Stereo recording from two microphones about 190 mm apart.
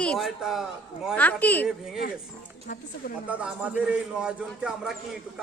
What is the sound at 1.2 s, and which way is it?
Speech, 10° left (ahead or behind).